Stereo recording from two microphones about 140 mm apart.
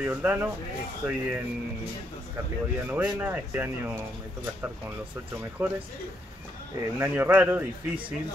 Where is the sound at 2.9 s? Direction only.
10° right (ahead or behind).